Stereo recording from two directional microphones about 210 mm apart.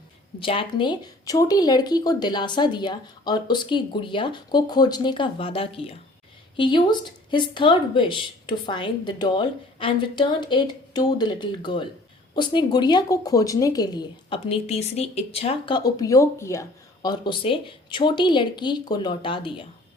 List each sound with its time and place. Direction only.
0.3 s speech: 25° left (ahead or behind)